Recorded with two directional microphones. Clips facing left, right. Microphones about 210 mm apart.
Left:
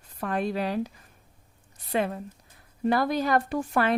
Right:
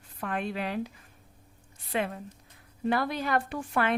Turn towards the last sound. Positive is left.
turn(degrees=40)  # may be behind; listen again after turning